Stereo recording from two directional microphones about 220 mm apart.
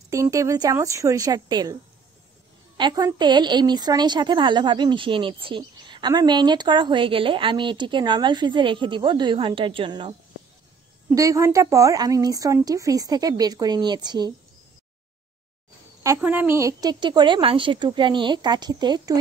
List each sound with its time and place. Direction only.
0.1 s a woman's voice: 15° right (ahead or behind)
2.8 s a woman's voice: 20° right (ahead or behind)
16.0 s a woman's voice: 10° right (ahead or behind)